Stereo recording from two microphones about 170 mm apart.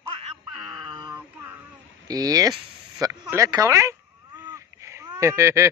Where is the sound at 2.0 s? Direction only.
20° right (ahead or behind).